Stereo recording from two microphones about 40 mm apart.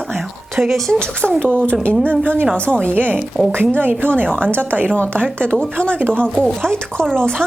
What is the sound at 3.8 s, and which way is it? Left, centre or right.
Speech, right.